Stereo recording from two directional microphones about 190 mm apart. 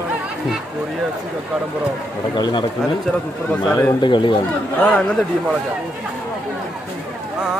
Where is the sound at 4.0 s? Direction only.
25° left (ahead or behind).